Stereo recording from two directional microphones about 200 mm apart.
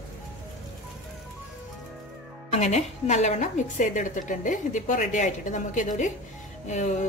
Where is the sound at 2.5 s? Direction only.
35° left (ahead or behind).